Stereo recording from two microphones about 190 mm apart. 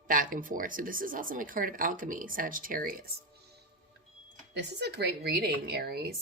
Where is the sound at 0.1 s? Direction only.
45° right (ahead or behind).